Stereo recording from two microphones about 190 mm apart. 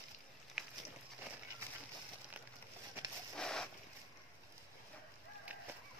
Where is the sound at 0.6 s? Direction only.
Centre (ahead or behind).